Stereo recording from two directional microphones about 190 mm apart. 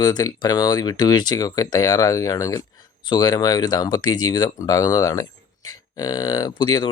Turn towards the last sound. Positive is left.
turn(degrees=25)  # may be behind; listen again after turning